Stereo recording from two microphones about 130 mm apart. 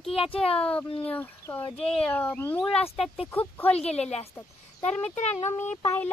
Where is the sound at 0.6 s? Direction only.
10° left (ahead or behind).